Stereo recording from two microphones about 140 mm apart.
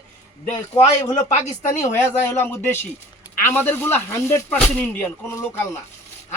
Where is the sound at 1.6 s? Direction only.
60° left (ahead or behind).